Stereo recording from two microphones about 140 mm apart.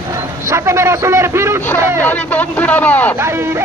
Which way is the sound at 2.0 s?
10° left (ahead or behind).